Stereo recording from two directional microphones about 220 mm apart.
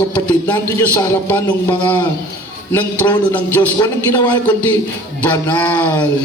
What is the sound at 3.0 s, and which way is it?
A man's voice, 20° left (ahead or behind).